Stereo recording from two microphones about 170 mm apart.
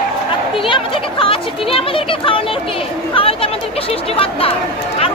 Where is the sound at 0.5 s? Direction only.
30° left (ahead or behind).